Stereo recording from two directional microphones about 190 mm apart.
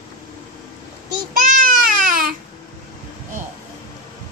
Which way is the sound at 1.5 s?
45° right (ahead or behind).